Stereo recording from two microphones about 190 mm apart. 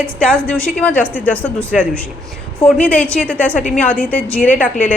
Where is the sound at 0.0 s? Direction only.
5° left (ahead or behind).